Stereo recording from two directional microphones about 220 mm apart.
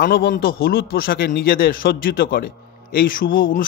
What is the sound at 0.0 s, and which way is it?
Speech, 40° left (ahead or behind).